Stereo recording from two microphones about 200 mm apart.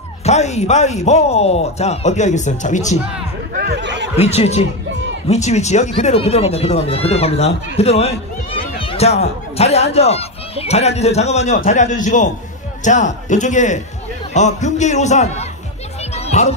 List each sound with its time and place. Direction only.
0.2 s speech: 35° left (ahead or behind)
3.5 s a sound: 50° right (ahead or behind)
4.2 s speech: 30° left (ahead or behind)
16.2 s music: 35° left (ahead or behind)